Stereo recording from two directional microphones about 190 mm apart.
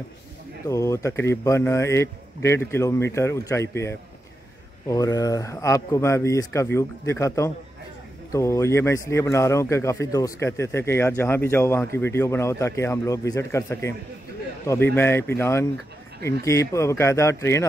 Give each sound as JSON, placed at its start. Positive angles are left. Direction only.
{"t": 0.7, "sound": "a man's voice", "side_deg": 15}
{"t": 15.0, "sound": "a man's voice", "side_deg": 10}